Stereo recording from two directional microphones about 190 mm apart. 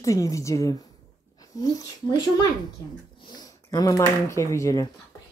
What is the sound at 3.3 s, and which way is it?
Speech, 20° left (ahead or behind).